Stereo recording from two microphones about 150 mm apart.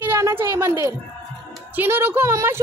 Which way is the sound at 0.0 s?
15° right (ahead or behind).